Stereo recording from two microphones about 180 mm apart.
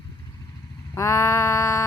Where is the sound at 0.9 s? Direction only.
15° left (ahead or behind).